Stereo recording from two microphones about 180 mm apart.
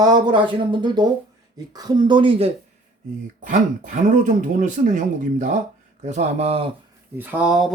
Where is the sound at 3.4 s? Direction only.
50° right (ahead or behind).